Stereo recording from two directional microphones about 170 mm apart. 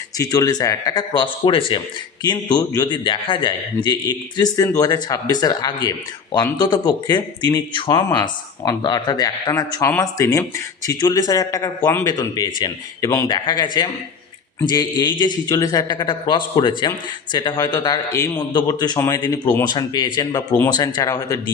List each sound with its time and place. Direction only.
0.2 s speech: 20° left (ahead or behind)